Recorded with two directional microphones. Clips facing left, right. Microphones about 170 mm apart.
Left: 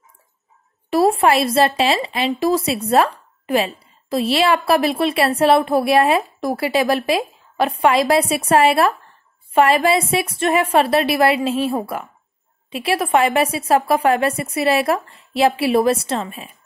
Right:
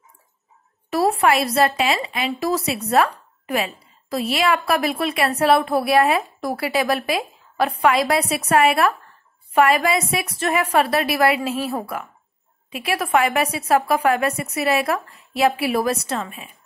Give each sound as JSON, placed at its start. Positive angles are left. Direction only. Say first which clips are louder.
{"t": 0.8, "sound": "a woman's voice", "louder": "left 3 dB", "side_deg": 25}